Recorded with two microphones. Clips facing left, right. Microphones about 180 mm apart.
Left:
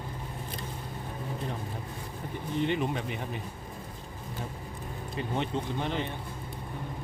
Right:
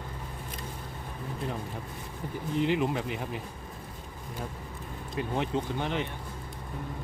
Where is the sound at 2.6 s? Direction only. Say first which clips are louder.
Right 2 dB; 5° right (ahead or behind).